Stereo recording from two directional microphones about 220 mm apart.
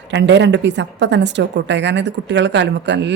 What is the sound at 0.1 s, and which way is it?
A woman's voice, 55° right (ahead or behind).